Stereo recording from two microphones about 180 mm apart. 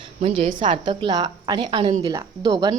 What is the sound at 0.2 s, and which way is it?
Speech, 40° right (ahead or behind).